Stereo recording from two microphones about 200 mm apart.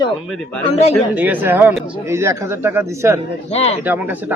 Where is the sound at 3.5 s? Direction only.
30° left (ahead or behind).